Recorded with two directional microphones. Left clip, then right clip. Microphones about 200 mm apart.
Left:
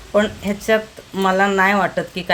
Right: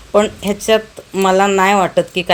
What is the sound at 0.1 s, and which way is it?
Speech, 35° right (ahead or behind).